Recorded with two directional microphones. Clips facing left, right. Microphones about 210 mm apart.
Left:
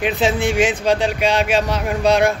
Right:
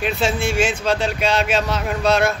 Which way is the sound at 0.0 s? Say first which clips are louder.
Left 3 dB; 15° left (ahead or behind).